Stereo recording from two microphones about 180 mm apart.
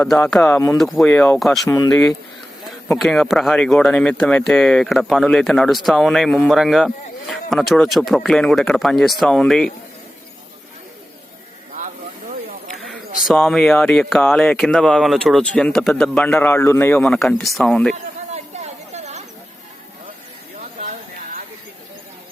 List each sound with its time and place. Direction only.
0.1 s speech: centre (ahead or behind)
12.9 s speech: centre (ahead or behind)
18.5 s chatter: 40° right (ahead or behind)